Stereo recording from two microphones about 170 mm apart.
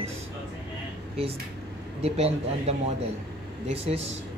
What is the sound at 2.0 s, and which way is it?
Speech, 35° right (ahead or behind).